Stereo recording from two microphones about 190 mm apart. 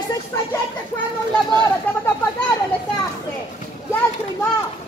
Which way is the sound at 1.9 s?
10° left (ahead or behind).